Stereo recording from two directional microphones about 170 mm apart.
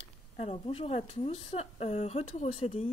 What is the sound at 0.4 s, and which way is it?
Speech, 35° left (ahead or behind).